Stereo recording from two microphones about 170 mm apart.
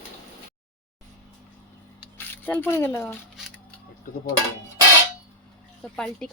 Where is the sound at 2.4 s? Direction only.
10° left (ahead or behind).